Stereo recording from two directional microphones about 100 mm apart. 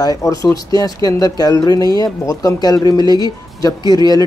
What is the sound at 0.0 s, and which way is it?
Speech, 40° left (ahead or behind).